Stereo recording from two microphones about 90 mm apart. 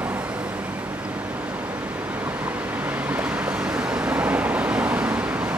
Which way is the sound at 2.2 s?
20° right (ahead or behind).